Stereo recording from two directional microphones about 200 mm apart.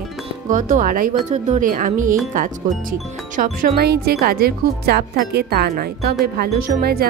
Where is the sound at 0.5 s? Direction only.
40° right (ahead or behind).